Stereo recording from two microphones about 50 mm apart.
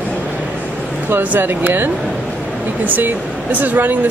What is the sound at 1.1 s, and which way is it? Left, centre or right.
Speech, right.